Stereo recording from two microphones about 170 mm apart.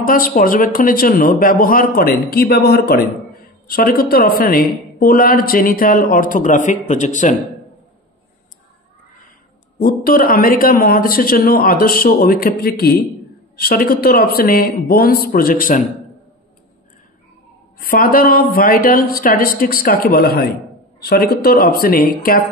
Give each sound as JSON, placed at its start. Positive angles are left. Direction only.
{"t": 0.0, "sound": "a woman's voice", "side_deg": 55}
{"t": 9.8, "sound": "a woman's voice", "side_deg": 60}
{"t": 17.7, "sound": "a woman's voice", "side_deg": 60}